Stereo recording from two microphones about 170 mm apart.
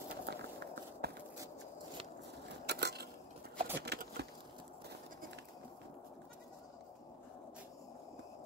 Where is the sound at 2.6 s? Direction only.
75° right (ahead or behind).